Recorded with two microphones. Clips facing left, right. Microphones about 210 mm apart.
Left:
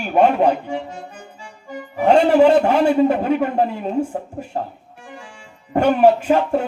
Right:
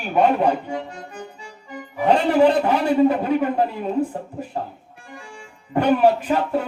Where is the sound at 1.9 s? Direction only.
45° left (ahead or behind).